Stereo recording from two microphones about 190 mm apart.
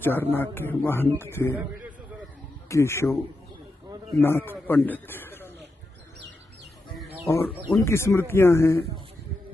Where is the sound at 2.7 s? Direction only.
15° left (ahead or behind).